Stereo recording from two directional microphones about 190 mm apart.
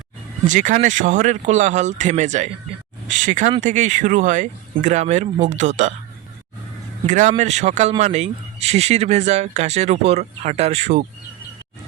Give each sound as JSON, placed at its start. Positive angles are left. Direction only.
{"t": 0.4, "sound": "speech", "side_deg": -40}
{"t": 7.1, "sound": "speech", "side_deg": -40}